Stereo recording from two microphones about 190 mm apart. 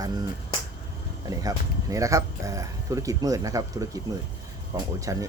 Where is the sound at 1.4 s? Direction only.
15° right (ahead or behind).